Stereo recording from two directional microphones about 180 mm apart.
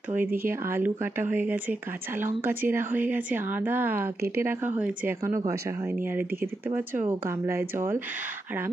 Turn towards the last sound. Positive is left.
turn(degrees=-15)  # may be behind; listen again after turning